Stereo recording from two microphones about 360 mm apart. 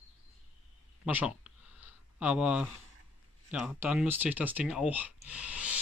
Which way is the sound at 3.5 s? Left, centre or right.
Centre.